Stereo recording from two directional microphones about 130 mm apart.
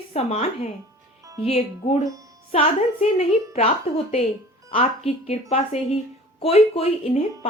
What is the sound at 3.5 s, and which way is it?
A woman's voice, 50° left (ahead or behind).